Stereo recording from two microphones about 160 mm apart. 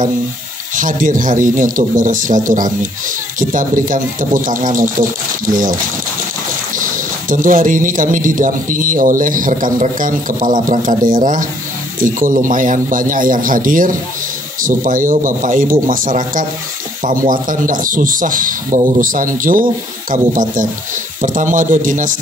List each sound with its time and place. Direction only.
0.7 s speech: 55° right (ahead or behind)